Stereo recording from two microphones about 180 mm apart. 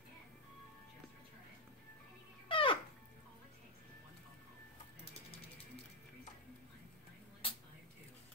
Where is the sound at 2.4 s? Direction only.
30° left (ahead or behind).